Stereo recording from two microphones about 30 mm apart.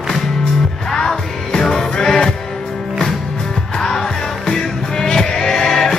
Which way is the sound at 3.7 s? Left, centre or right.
Centre.